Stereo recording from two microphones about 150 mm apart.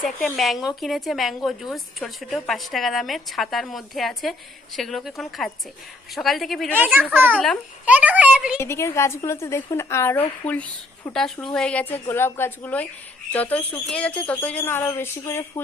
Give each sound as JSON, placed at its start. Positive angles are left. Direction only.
{"t": 0.0, "sound": "a woman's voice", "side_deg": 0}
{"t": 6.7, "sound": "a child's voice", "side_deg": -10}
{"t": 7.3, "sound": "a woman's voice", "side_deg": 5}
{"t": 7.9, "sound": "a child's voice", "side_deg": -10}
{"t": 8.5, "sound": "a woman's voice", "side_deg": 15}